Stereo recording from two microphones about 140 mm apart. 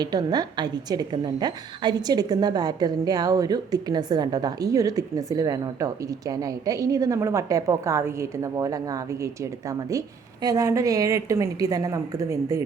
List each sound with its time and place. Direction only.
0.0 s a woman's voice: 30° right (ahead or behind)